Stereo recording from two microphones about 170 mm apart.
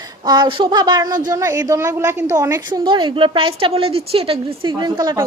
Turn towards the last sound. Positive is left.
turn(degrees=-25)  # may be behind; listen again after turning